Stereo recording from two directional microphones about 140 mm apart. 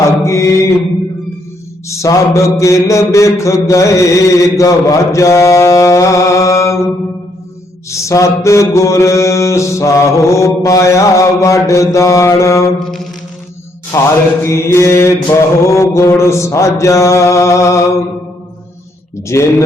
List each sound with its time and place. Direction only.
0.3 s mantra: 20° left (ahead or behind)
1.9 s mantra: 20° left (ahead or behind)
7.9 s mantra: 20° left (ahead or behind)
13.9 s mantra: 20° left (ahead or behind)
19.3 s mantra: 20° left (ahead or behind)